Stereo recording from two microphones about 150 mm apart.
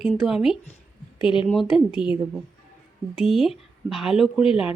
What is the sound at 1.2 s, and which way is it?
Speech, 35° left (ahead or behind).